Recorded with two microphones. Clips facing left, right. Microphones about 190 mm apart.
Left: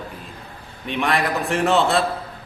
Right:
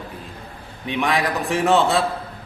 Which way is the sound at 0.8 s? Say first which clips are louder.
Right 1 dB; 15° right (ahead or behind).